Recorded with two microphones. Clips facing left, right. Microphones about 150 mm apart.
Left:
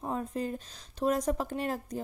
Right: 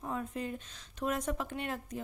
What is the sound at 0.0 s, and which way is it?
Speech, 35° left (ahead or behind).